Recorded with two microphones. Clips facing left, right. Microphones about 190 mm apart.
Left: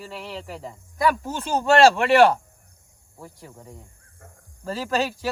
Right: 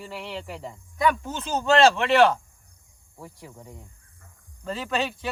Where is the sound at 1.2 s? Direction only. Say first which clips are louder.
Left 3 dB; 35° left (ahead or behind).